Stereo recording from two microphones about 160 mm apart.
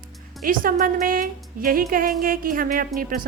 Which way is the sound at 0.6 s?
60° right (ahead or behind).